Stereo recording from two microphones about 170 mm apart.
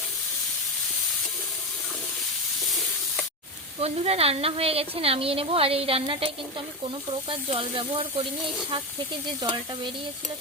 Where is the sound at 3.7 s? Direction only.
35° right (ahead or behind).